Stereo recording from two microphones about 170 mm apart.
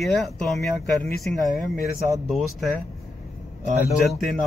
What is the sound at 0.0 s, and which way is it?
Speech, centre (ahead or behind).